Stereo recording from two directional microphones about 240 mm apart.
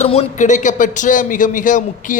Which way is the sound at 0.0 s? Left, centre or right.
Left.